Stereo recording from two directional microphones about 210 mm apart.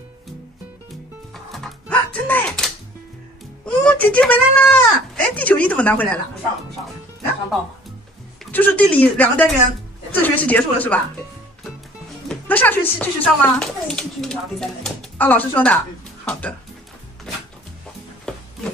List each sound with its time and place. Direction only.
1.3 s music: centre (ahead or behind)
3.6 s speech: 5° left (ahead or behind)
8.5 s speech: 10° left (ahead or behind)
12.3 s speech: 10° left (ahead or behind)